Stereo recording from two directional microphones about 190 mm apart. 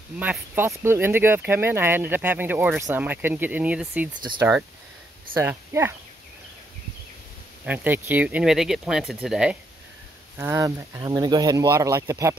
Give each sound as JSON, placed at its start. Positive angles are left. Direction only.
{"t": 0.2, "sound": "speech", "side_deg": -10}
{"t": 7.6, "sound": "speech", "side_deg": -10}